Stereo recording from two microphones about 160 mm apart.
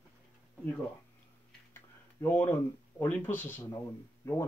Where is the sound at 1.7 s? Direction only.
10° left (ahead or behind).